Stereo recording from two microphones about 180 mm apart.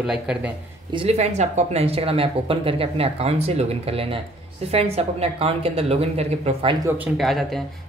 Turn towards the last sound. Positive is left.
turn(degrees=0)  # may be behind; listen again after turning